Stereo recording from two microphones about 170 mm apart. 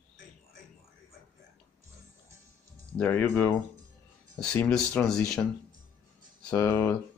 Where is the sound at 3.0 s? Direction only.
10° left (ahead or behind).